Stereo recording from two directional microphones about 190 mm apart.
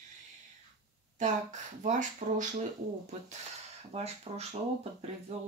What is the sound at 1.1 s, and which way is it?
Speech, 40° right (ahead or behind).